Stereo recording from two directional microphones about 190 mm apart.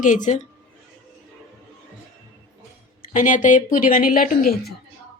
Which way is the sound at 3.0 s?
45° left (ahead or behind).